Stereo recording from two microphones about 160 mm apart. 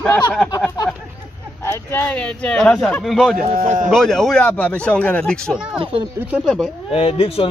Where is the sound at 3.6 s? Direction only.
50° right (ahead or behind).